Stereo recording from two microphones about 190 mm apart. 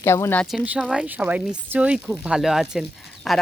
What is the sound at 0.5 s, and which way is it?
Speech, 5° right (ahead or behind).